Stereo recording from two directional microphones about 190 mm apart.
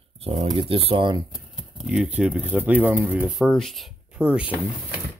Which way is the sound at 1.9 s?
5° right (ahead or behind).